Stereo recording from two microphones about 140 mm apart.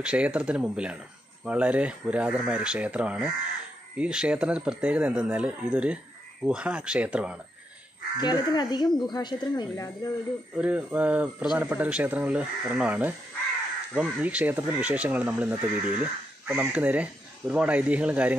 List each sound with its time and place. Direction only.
0.0 s speech: 10° right (ahead or behind)
8.2 s speech: 30° left (ahead or behind)
10.6 s speech: 10° right (ahead or behind)